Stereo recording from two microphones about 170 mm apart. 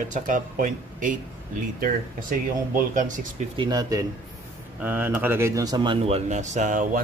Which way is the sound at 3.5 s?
25° right (ahead or behind).